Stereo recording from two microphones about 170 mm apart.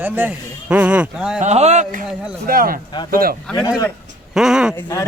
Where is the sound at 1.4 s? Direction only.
40° right (ahead or behind); by 3.3 s 60° right (ahead or behind).